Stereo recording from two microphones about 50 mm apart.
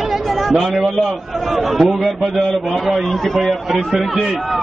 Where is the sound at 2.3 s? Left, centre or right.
Centre.